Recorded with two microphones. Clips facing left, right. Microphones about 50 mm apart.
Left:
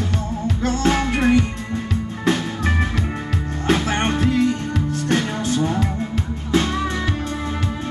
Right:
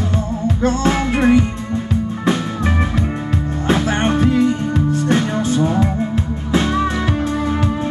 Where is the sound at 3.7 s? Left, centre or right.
Centre.